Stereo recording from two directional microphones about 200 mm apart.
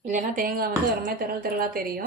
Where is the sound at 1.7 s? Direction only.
50° right (ahead or behind).